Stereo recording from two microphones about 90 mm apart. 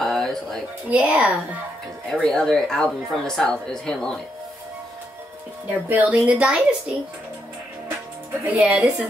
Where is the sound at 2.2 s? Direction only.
5° left (ahead or behind).